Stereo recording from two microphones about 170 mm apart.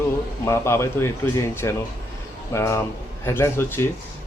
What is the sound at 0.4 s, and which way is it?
Speech, 15° left (ahead or behind).